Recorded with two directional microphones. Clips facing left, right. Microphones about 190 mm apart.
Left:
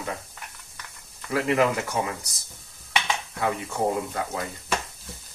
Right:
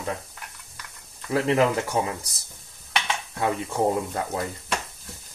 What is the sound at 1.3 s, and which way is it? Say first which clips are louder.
Speech: right 1 dB; 30° right (ahead or behind).